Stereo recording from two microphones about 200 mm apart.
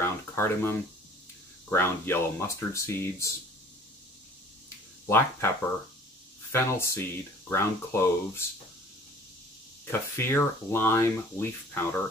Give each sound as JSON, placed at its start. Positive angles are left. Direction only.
{"t": 0.0, "sound": "speech", "side_deg": 10}
{"t": 5.0, "sound": "speech", "side_deg": 10}
{"t": 6.5, "sound": "speech", "side_deg": 10}
{"t": 9.8, "sound": "speech", "side_deg": 10}